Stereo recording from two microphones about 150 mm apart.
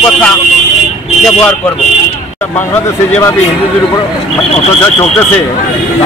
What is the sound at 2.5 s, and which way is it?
Speech, 15° left (ahead or behind).